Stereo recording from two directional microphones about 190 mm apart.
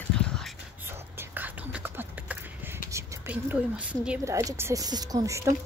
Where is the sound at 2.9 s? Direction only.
10° right (ahead or behind).